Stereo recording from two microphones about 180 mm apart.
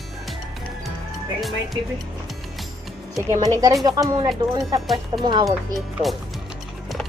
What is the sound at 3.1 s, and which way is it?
Speech, 20° right (ahead or behind).